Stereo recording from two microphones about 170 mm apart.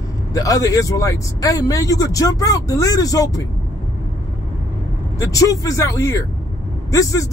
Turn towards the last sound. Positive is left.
turn(degrees=20)  # may be behind; listen again after turning